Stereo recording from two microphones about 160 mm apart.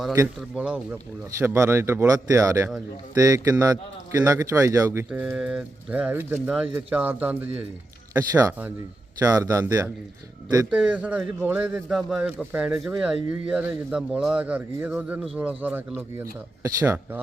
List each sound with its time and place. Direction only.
0.5 s a man's voice: 5° right (ahead or behind)
5.2 s speech: 5° right (ahead or behind)
8.3 s a man's voice: 25° right (ahead or behind)
10.7 s speech: 5° right (ahead or behind)